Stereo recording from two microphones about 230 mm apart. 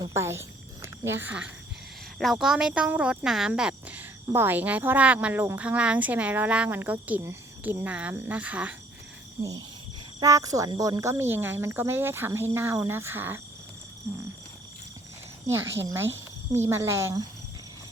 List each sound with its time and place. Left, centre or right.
0.0 s speech: centre
15.8 s speech: centre